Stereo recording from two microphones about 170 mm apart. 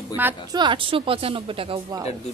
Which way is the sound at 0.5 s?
25° right (ahead or behind).